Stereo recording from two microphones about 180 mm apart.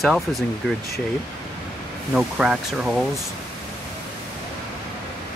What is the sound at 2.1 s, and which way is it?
Speech, 5° right (ahead or behind).